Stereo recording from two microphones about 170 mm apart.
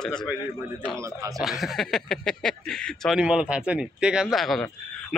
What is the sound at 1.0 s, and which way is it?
Speech, 20° right (ahead or behind).